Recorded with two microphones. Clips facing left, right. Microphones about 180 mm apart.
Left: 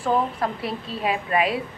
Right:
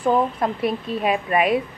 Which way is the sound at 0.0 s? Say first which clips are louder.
Right 3 dB; 20° right (ahead or behind).